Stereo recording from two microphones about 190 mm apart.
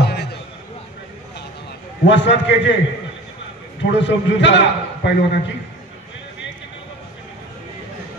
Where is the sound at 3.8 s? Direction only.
70° left (ahead or behind).